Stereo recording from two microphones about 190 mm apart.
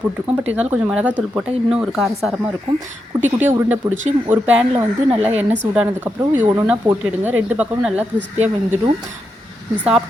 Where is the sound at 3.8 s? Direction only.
20° right (ahead or behind).